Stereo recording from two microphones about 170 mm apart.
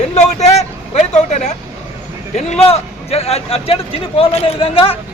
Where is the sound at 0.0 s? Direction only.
40° left (ahead or behind).